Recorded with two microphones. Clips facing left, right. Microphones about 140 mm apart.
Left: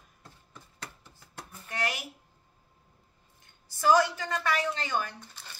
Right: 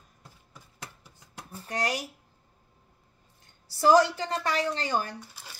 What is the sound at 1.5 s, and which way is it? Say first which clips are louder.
Speech: right 4 dB; 35° right (ahead or behind).